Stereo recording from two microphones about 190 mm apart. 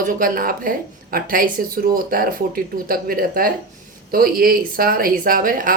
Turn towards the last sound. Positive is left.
turn(degrees=-45)  # may be behind; listen again after turning